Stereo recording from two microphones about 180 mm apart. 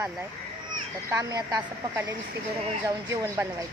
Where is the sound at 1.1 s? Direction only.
20° right (ahead or behind).